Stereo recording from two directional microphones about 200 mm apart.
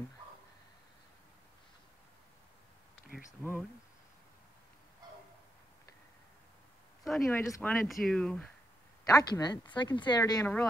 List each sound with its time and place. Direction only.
3.3 s speech: 10° left (ahead or behind)
7.1 s speech: centre (ahead or behind)
9.0 s speech: 20° left (ahead or behind)